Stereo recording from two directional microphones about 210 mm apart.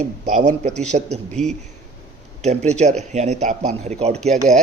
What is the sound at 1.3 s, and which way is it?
Speech, 5° left (ahead or behind).